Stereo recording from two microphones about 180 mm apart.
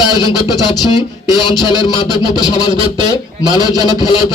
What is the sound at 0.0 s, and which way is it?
Speech, 25° left (ahead or behind).